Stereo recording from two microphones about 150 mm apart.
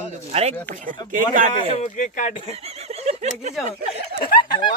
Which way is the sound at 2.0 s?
60° left (ahead or behind).